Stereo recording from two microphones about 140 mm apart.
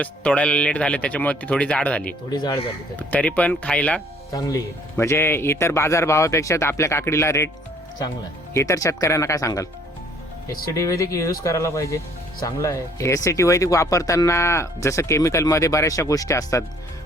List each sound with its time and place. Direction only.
0.0 s speech: 10° left (ahead or behind)
2.3 s speech: 30° left (ahead or behind)
2.9 s speech: 10° left (ahead or behind)
4.3 s speech: 25° left (ahead or behind)
8.5 s speech: 25° left (ahead or behind)
10.8 s speech: 25° left (ahead or behind)